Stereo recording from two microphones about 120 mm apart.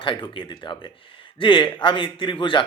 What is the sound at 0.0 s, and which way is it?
A man's voice, 45° left (ahead or behind).